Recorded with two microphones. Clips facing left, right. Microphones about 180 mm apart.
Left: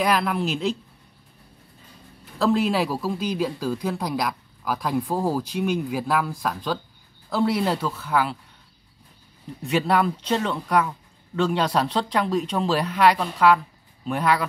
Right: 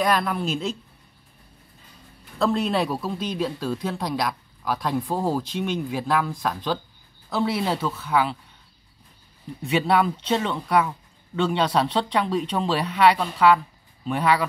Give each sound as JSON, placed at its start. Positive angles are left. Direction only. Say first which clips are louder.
{"t": 0.0, "sound": "speech", "louder": "left 1 dB", "side_deg": 5}
{"t": 2.3, "sound": "speech", "louder": "left 1 dB", "side_deg": 0}
{"t": 9.6, "sound": "speech", "louder": "even", "side_deg": 0}